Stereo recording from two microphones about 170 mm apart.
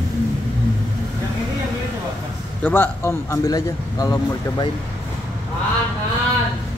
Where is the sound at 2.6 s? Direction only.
10° left (ahead or behind).